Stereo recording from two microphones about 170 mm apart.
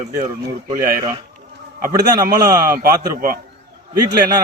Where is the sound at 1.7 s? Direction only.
55° right (ahead or behind).